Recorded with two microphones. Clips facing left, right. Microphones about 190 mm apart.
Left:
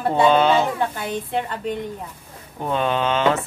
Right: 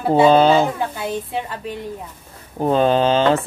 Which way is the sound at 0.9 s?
5° right (ahead or behind).